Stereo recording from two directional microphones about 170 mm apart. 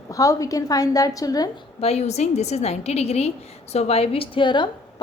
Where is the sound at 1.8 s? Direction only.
40° left (ahead or behind).